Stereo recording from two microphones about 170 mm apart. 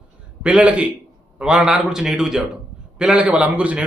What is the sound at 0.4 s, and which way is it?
A man's voice, 5° right (ahead or behind).